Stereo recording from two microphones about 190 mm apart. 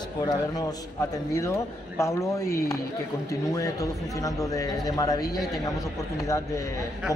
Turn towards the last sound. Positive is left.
turn(degrees=15)  # may be behind; listen again after turning